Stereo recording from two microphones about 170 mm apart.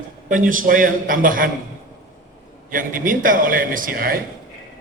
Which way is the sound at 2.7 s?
50° right (ahead or behind).